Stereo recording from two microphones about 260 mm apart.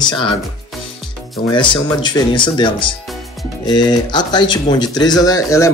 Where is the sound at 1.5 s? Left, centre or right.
Centre.